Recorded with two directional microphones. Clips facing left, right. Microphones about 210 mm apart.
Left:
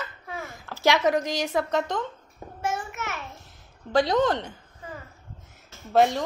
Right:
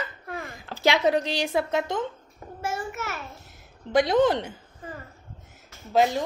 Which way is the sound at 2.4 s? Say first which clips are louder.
Even; 20° left (ahead or behind).